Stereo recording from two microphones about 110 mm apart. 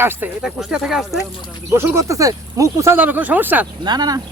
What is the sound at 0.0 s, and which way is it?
Speech, 20° right (ahead or behind).